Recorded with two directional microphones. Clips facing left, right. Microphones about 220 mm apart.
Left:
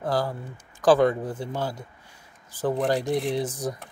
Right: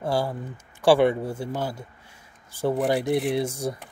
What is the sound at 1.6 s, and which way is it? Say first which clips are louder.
Speech: even; 25° right (ahead or behind).